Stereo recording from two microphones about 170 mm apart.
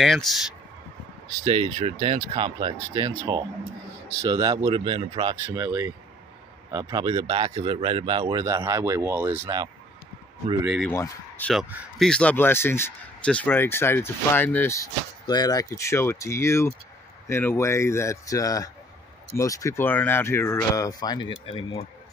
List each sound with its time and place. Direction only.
0.0 s speech: centre (ahead or behind)
1.4 s a man's voice: 35° right (ahead or behind)
6.7 s a man's voice: 25° right (ahead or behind)
10.8 s speech: 10° left (ahead or behind)
11.5 s speech: 5° right (ahead or behind)
12.1 s speech: 10° left (ahead or behind); by 21.8 s 30° left (ahead or behind)